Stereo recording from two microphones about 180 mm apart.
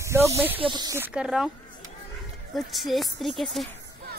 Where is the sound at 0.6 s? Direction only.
25° right (ahead or behind).